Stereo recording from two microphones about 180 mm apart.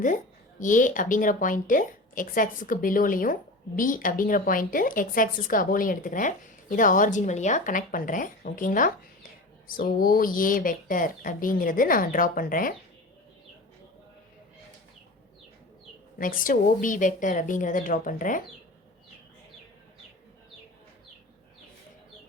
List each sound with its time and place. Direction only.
0.6 s a woman's voice: 45° left (ahead or behind)
16.1 s a woman's voice: 50° left (ahead or behind)